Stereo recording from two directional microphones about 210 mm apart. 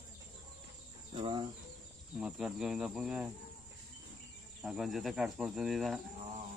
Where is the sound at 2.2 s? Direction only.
5° right (ahead or behind).